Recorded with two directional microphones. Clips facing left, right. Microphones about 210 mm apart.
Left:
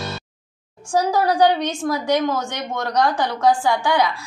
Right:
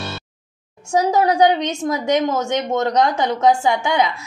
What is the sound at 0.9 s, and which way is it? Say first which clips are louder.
A woman's voice: right 2 dB; 20° right (ahead or behind).